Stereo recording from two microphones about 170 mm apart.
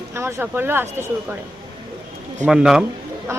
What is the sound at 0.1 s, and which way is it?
Speech, 15° right (ahead or behind).